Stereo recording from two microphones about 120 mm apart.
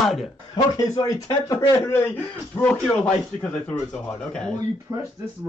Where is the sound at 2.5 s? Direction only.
10° left (ahead or behind).